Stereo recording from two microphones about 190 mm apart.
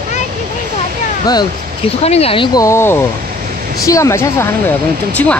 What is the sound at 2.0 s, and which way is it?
Speech, 30° left (ahead or behind).